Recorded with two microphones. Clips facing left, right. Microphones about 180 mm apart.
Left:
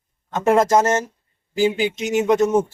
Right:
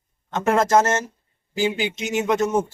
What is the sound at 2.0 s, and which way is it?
Speech, 40° left (ahead or behind).